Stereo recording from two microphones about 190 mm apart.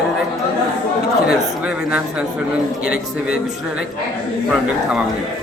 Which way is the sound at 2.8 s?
50° left (ahead or behind).